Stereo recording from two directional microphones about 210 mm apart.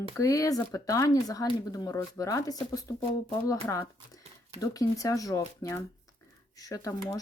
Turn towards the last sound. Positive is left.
turn(degrees=15)  # may be behind; listen again after turning